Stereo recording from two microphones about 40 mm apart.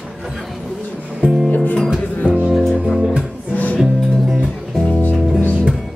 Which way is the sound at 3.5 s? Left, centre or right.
Left.